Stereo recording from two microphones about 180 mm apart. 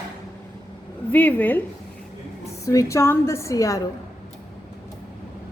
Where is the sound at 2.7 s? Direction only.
15° left (ahead or behind).